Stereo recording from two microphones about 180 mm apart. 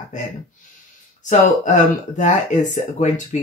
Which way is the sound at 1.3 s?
40° left (ahead or behind).